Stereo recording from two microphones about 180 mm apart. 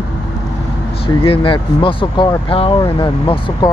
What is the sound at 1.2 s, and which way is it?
Speech, 30° left (ahead or behind).